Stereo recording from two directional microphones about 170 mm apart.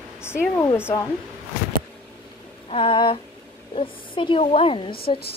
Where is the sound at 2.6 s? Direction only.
30° left (ahead or behind).